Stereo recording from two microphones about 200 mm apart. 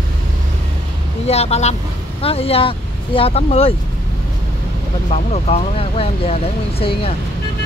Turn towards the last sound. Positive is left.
turn(degrees=30)  # may be behind; listen again after turning